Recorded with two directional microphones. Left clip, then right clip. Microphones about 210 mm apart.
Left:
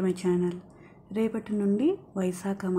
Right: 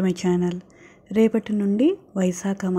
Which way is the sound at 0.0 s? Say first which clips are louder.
Right 4 dB; 25° right (ahead or behind).